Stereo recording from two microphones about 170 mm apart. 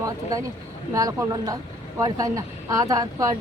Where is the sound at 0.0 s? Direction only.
20° right (ahead or behind).